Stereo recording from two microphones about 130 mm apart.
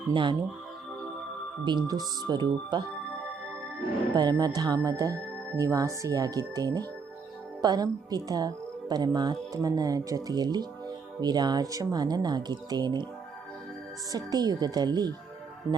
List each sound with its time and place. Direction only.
0.1 s speech: 40° right (ahead or behind)
1.6 s speech: 35° right (ahead or behind)
4.1 s speech: 35° right (ahead or behind)
14.1 s speech: 30° right (ahead or behind)